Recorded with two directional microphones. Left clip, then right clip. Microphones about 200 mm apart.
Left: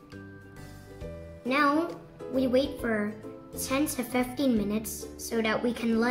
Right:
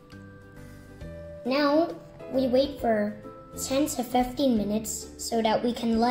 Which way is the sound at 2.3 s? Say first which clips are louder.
Right 2 dB; 15° left (ahead or behind).